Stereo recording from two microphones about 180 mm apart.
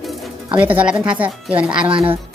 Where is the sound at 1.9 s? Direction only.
30° right (ahead or behind).